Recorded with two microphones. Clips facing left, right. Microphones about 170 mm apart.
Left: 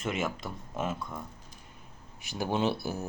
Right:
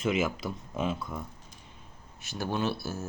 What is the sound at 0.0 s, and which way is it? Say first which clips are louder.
Speech: right 4 dB; centre (ahead or behind).